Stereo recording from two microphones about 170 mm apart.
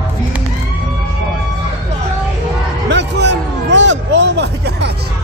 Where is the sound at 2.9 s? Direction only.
90° right.